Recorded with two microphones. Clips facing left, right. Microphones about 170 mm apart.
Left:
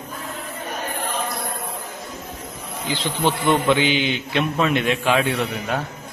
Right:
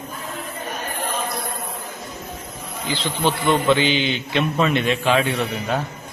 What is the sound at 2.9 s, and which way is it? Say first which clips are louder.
A man's voice: even; 15° left (ahead or behind).